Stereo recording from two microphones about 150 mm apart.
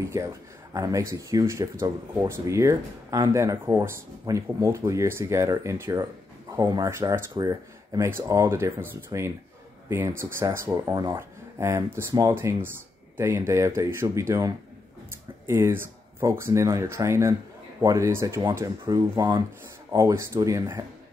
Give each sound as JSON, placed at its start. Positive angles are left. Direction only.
{"t": 0.1, "sound": "speech", "side_deg": -20}